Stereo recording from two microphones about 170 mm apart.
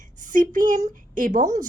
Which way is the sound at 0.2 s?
50° right (ahead or behind).